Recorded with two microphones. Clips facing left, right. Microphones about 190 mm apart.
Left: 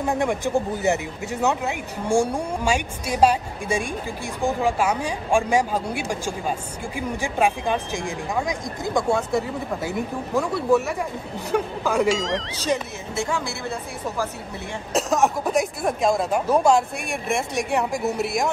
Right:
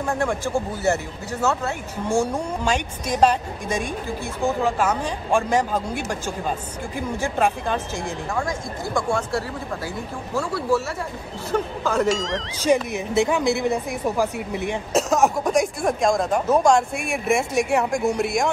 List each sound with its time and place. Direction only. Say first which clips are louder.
0.0 s speech: left 1 dB; 15° left (ahead or behind)
12.1 s speech: left 1 dB; centre (ahead or behind)
12.5 s speech: right 5 dB; 15° right (ahead or behind)
14.9 s speech: right 1 dB; centre (ahead or behind)